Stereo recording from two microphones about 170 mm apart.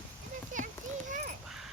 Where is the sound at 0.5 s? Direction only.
50° right (ahead or behind).